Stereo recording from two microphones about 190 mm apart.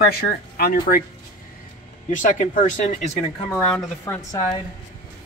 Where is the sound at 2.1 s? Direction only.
40° left (ahead or behind).